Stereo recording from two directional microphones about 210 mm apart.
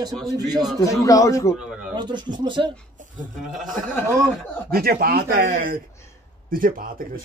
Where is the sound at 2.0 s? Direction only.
20° right (ahead or behind).